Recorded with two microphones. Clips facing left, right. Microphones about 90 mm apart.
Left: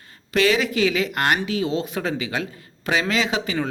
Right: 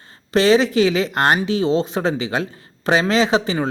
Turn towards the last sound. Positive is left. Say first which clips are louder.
# right 6 dB
turn(degrees=-30)  # may be behind; listen again after turning